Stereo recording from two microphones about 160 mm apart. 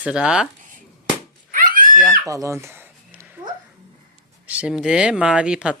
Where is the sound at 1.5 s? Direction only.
60° right (ahead or behind).